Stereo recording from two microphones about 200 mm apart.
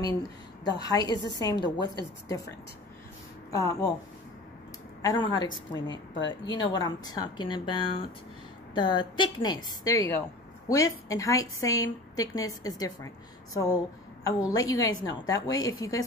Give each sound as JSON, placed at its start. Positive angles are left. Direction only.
{"t": 0.7, "sound": "speech", "side_deg": 20}
{"t": 3.5, "sound": "a woman's voice", "side_deg": 15}
{"t": 5.0, "sound": "speech", "side_deg": 20}
{"t": 5.5, "sound": "a woman's voice", "side_deg": 70}
{"t": 6.2, "sound": "a woman's voice", "side_deg": 25}